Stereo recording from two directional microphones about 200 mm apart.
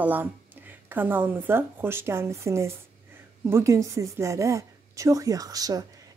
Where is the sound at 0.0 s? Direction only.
10° right (ahead or behind).